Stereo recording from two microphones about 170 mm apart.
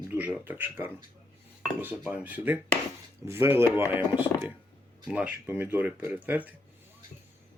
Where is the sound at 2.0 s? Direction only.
10° right (ahead or behind).